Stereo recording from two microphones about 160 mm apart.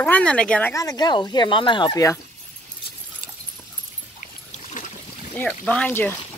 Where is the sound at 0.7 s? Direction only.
25° left (ahead or behind).